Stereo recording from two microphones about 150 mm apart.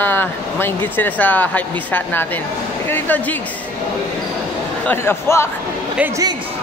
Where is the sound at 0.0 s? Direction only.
15° left (ahead or behind).